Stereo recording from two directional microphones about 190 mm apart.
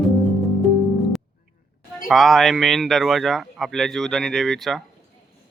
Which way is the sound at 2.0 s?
Centre (ahead or behind).